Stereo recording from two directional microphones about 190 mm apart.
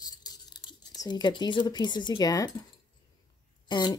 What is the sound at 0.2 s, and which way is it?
Speech, 20° left (ahead or behind).